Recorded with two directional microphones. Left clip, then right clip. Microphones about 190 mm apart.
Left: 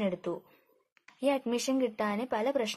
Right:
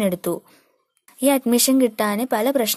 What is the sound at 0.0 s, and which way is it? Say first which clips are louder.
Speech: right 10 dB; 40° right (ahead or behind).